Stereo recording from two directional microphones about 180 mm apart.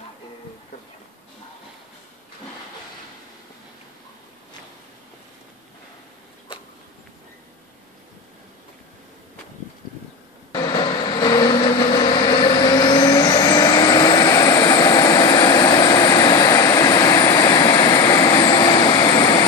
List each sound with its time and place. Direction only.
10.5 s vehicle: 20° left (ahead or behind)